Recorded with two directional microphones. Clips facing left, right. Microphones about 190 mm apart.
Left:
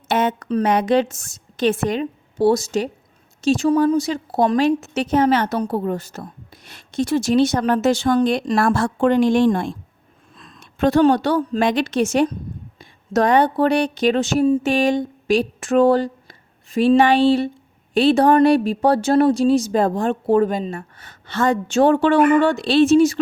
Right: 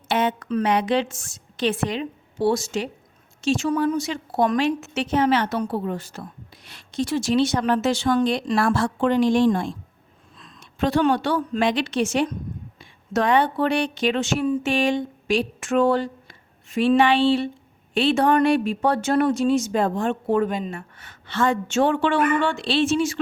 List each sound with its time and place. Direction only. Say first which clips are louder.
0.1 s a woman's voice: left 3 dB; 45° left (ahead or behind)